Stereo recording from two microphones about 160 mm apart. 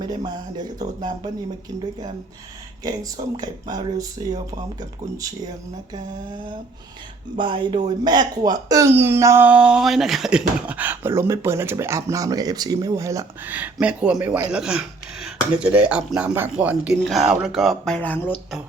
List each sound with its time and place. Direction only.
0.3 s speech: 25° right (ahead or behind)
2.8 s speech: 25° right (ahead or behind)
7.3 s speech: 30° right (ahead or behind); by 18.3 s 10° left (ahead or behind)